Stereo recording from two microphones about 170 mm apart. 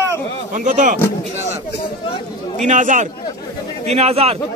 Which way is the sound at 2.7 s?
50° right (ahead or behind).